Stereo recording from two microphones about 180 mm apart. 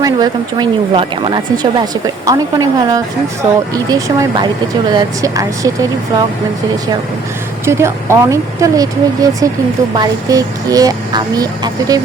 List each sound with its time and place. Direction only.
0.0 s speech: 20° right (ahead or behind)
7.6 s speech: 15° right (ahead or behind)